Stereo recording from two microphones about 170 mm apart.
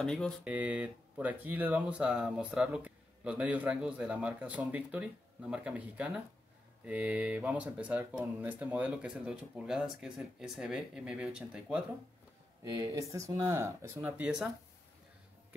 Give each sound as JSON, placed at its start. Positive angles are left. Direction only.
{"t": 0.0, "sound": "speech", "side_deg": 5}
{"t": 0.4, "sound": "speech", "side_deg": -10}
{"t": 12.7, "sound": "speech", "side_deg": -20}